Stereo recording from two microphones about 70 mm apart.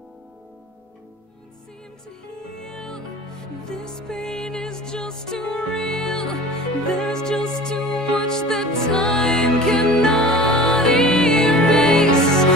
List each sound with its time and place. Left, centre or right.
2.6 s music: centre